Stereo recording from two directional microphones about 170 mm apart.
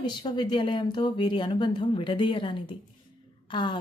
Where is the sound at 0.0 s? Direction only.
25° left (ahead or behind).